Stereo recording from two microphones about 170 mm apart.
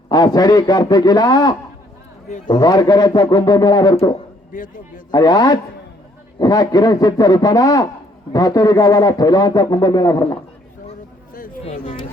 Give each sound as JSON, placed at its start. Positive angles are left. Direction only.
{"t": 0.1, "sound": "a man's voice", "side_deg": 25}
{"t": 5.1, "sound": "a man's voice", "side_deg": 25}
{"t": 11.6, "sound": "a sound", "side_deg": 35}